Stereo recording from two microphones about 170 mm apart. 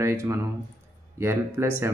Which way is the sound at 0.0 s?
15° right (ahead or behind).